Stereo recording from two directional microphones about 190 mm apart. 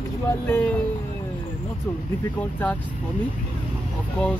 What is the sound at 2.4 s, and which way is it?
Speech, 10° left (ahead or behind).